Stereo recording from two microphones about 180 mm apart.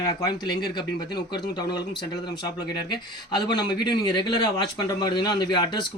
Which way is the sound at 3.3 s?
25° left (ahead or behind).